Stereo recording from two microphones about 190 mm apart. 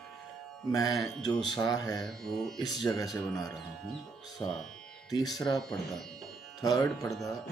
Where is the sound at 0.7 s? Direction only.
20° left (ahead or behind).